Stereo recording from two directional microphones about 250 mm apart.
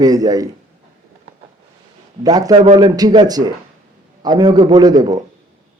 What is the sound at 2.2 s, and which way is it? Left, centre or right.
Speech, centre.